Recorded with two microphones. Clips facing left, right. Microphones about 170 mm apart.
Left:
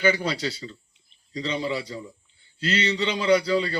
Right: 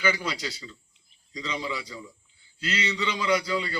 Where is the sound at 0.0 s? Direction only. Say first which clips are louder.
Left 5 dB; 30° left (ahead or behind).